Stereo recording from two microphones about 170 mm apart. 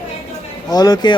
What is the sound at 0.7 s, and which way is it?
Speech, 25° left (ahead or behind).